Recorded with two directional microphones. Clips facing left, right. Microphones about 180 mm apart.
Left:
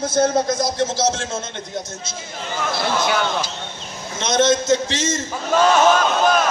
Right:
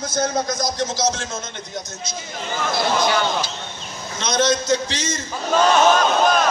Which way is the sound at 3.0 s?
5° left (ahead or behind).